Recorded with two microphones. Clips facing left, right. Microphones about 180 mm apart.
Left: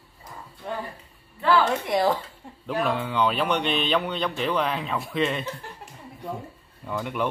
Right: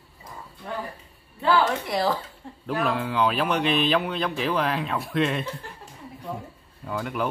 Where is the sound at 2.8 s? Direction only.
Centre (ahead or behind).